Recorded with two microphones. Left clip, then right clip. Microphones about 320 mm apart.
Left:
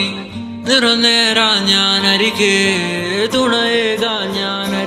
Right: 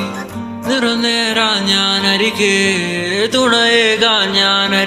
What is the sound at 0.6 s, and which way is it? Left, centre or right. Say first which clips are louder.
Music: left 3 dB; centre.